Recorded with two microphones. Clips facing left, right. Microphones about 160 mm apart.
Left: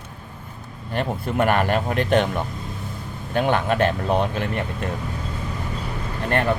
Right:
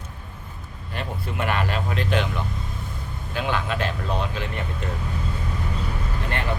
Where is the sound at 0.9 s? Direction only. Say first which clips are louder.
Left 7 dB; 50° left (ahead or behind).